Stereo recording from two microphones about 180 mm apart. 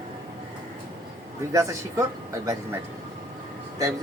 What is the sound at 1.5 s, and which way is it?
Speech, 15° right (ahead or behind).